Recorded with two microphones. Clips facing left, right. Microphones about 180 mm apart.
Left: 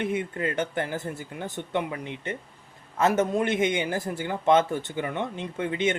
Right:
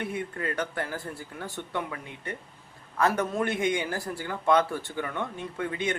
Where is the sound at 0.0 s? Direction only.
20° left (ahead or behind).